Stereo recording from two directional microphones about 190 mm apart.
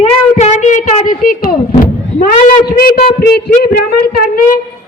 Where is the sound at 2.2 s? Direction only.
50° left (ahead or behind).